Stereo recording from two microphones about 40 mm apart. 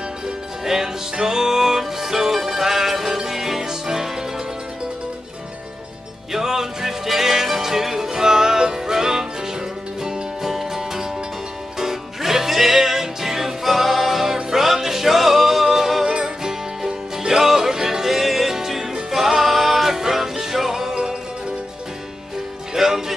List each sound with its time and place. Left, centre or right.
0.7 s music: centre
6.3 s music: centre
22.8 s music: centre